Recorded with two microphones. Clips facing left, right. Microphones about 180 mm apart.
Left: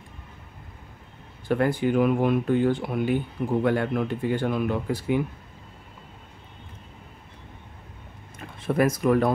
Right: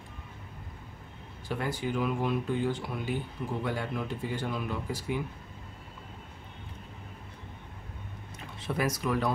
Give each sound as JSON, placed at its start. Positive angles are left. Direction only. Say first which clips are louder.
{"t": 1.5, "sound": "speech", "louder": "left 10 dB", "side_deg": 60}
{"t": 8.5, "sound": "speech", "louder": "left 8 dB", "side_deg": 50}